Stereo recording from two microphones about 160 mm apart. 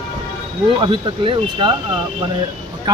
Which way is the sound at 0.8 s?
30° right (ahead or behind).